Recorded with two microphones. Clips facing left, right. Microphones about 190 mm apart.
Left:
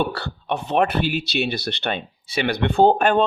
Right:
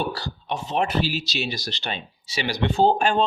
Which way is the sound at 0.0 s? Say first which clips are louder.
Left 4 dB; 60° left (ahead or behind).